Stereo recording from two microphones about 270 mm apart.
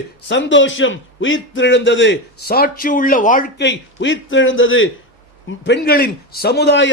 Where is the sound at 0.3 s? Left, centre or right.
Left.